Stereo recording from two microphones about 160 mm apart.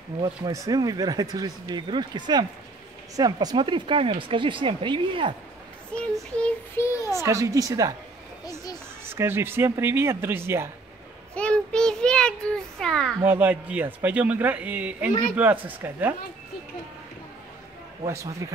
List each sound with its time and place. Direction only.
0.2 s speech: 20° right (ahead or behind)
6.3 s child singing: 5° left (ahead or behind)
7.1 s speech: 20° right (ahead or behind)
9.0 s a man's voice: 15° right (ahead or behind)
11.3 s a child's voice: 5° left (ahead or behind)
13.2 s a man's voice: 10° right (ahead or behind)
18.0 s speech: 20° right (ahead or behind)